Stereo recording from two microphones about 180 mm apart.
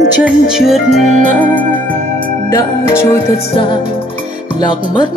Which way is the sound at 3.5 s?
25° left (ahead or behind).